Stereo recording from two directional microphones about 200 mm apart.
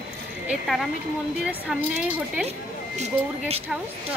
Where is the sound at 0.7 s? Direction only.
Centre (ahead or behind).